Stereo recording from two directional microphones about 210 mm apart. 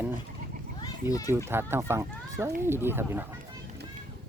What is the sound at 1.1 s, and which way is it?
Speech, 15° left (ahead or behind).